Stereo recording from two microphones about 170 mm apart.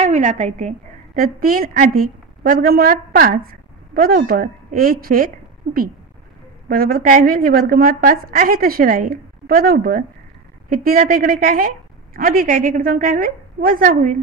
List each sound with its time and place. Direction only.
0.0 s a woman's voice: 45° right (ahead or behind)